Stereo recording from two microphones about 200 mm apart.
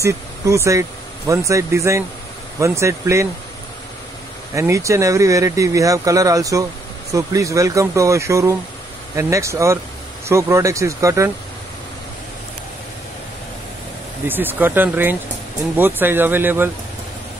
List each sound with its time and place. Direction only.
0.0 s speech: 15° right (ahead or behind)
4.6 s speech: 15° right (ahead or behind)
14.2 s speech: 10° right (ahead or behind)